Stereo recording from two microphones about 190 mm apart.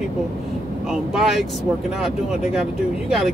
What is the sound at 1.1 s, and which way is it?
Speech, centre (ahead or behind).